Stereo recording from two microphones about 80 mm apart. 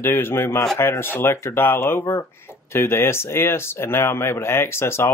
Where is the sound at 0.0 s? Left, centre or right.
Left.